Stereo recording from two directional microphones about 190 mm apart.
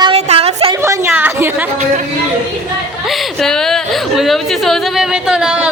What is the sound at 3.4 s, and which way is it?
Speech, centre (ahead or behind).